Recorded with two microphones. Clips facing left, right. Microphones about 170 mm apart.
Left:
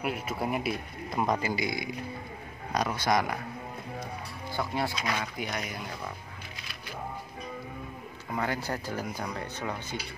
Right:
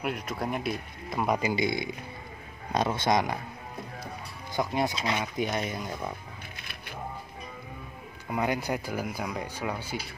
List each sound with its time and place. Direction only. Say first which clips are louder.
0.0 s speech: even; 5° left (ahead or behind)
1.2 s speech: right 1 dB; 10° right (ahead or behind)
1.5 s speech: right 3 dB; 25° right (ahead or behind)
4.6 s speech: right 3 dB; 20° right (ahead or behind)
8.3 s speech: right 3 dB; 15° right (ahead or behind)